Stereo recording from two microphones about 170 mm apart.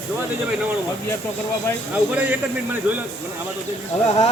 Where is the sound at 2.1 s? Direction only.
10° right (ahead or behind).